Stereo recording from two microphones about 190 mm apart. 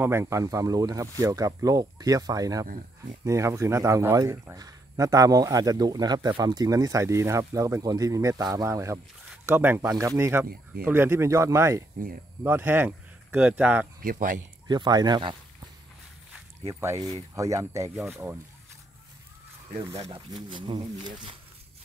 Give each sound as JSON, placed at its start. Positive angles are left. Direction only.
{"t": 0.0, "sound": "a man's voice", "side_deg": -15}
{"t": 14.0, "sound": "speech", "side_deg": -45}
{"t": 14.7, "sound": "speech", "side_deg": -20}
{"t": 16.6, "sound": "a man's voice", "side_deg": -15}
{"t": 19.7, "sound": "speech", "side_deg": -30}